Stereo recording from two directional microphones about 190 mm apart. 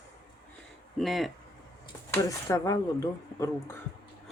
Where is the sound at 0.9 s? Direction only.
Centre (ahead or behind).